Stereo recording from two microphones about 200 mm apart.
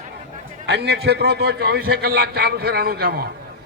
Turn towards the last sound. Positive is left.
turn(degrees=-50)  # may be behind; listen again after turning